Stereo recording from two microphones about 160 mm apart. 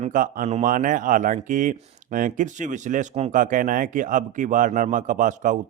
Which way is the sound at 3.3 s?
55° right (ahead or behind).